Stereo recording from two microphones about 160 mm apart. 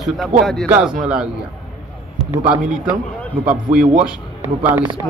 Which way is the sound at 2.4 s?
5° right (ahead or behind).